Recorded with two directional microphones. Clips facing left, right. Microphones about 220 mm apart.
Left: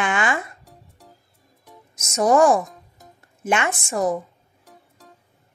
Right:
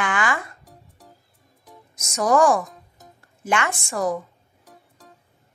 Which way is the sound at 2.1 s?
25° left (ahead or behind).